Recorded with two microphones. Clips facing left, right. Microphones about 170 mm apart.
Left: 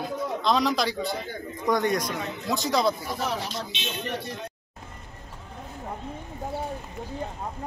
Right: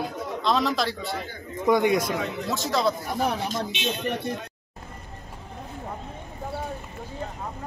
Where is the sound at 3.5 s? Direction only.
50° right (ahead or behind).